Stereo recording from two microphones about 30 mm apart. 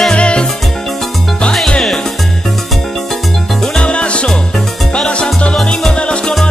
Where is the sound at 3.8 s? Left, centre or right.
Left.